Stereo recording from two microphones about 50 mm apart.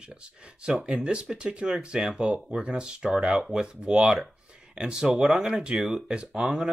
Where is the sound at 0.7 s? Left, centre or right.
Centre.